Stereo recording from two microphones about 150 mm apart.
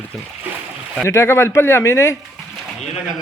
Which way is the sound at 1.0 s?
15° left (ahead or behind).